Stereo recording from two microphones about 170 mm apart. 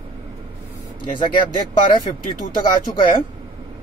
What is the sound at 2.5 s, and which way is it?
Speech, 25° left (ahead or behind).